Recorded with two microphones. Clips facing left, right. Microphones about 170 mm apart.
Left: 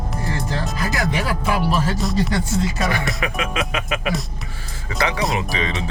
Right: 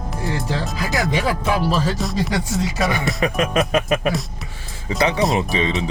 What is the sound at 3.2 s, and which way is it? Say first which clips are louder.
Music: right 5 dB; 40° right (ahead or behind).